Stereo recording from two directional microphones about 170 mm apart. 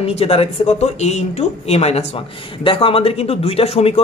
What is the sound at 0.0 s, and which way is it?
Speech, 35° left (ahead or behind).